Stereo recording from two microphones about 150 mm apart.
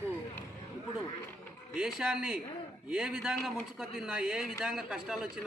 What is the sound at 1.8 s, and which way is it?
A man's voice, 5° right (ahead or behind).